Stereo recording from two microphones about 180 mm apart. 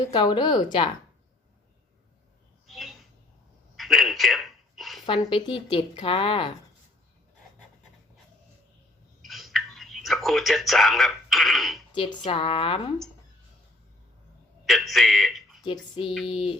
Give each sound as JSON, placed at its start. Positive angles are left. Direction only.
{"t": 0.1, "sound": "speech", "side_deg": 25}
{"t": 2.6, "sound": "a sound", "side_deg": 0}
{"t": 3.8, "sound": "telephone", "side_deg": 0}
{"t": 4.8, "sound": "a sound", "side_deg": 0}
{"t": 5.0, "sound": "speech", "side_deg": 25}
{"t": 9.2, "sound": "a sound", "side_deg": 0}
{"t": 11.9, "sound": "speech", "side_deg": 25}
{"t": 14.7, "sound": "speech", "side_deg": 0}
{"t": 15.6, "sound": "speech", "side_deg": 25}